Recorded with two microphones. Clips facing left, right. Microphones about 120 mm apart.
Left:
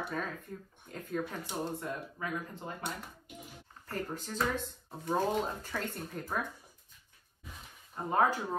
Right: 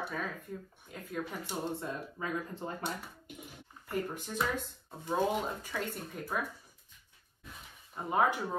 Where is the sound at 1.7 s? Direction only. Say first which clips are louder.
Even; 25° right (ahead or behind).